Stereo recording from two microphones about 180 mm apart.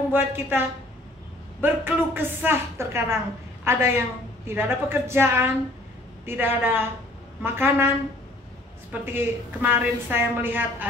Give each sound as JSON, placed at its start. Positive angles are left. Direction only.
{"t": 0.1, "sound": "a woman's voice", "side_deg": -15}
{"t": 9.0, "sound": "a woman's voice", "side_deg": -10}